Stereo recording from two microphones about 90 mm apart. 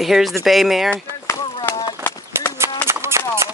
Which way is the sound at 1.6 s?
25° left (ahead or behind).